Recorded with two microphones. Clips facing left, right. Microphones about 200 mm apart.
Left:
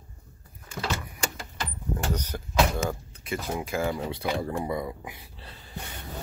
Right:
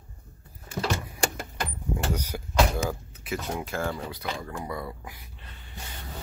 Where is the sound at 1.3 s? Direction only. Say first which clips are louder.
Right 3 dB; 55° right (ahead or behind).